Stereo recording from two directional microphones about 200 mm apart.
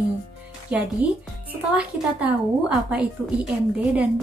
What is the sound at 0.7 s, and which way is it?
A woman's voice, 5° right (ahead or behind).